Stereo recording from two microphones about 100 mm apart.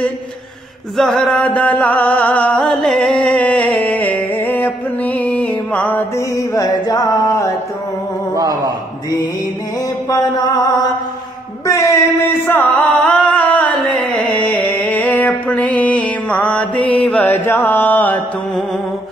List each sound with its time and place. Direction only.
0.9 s a sound: centre (ahead or behind)
1.2 s music: 10° left (ahead or behind)
6.1 s music: 35° left (ahead or behind)
8.4 s a man's voice: 40° right (ahead or behind)
10.0 s music: 45° left (ahead or behind)
11.6 s music: 30° left (ahead or behind)
13.0 s music: 10° left (ahead or behind)
17.5 s carnatic music: 25° left (ahead or behind)